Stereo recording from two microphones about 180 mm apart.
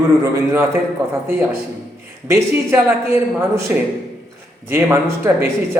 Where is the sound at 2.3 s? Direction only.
15° right (ahead or behind).